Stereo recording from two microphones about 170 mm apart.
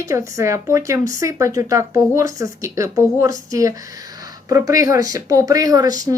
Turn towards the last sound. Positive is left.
turn(degrees=-20)  # may be behind; listen again after turning